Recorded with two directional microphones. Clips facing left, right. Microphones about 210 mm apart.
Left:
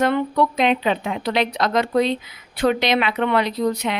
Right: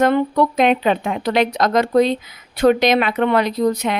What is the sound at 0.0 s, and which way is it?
Speech, 45° right (ahead or behind).